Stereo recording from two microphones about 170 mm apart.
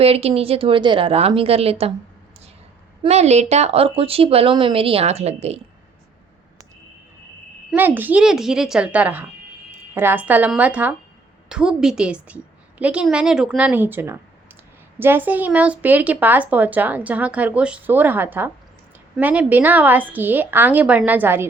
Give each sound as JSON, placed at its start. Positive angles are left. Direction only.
{"t": 0.0, "sound": "speech", "side_deg": -35}
{"t": 3.0, "sound": "speech", "side_deg": -40}
{"t": 7.7, "sound": "a woman's voice", "side_deg": -10}